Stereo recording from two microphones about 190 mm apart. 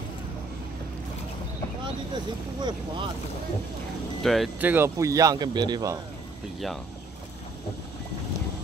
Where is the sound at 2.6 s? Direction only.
25° right (ahead or behind).